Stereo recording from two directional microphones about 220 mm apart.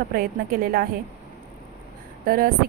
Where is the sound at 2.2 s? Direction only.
40° right (ahead or behind).